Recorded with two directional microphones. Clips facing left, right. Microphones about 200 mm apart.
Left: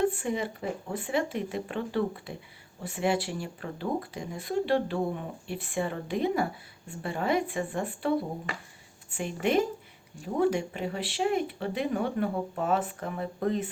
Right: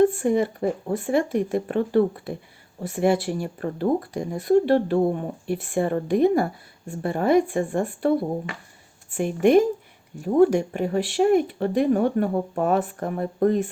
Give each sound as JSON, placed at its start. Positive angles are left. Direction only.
{"t": 0.1, "sound": "speech", "side_deg": -50}
{"t": 9.1, "sound": "speech", "side_deg": -50}